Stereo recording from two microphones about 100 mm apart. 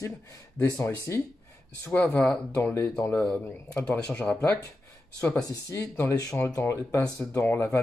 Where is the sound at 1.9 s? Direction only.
10° left (ahead or behind).